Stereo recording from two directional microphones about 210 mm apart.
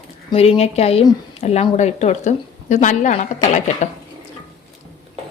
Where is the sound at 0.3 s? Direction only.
25° left (ahead or behind).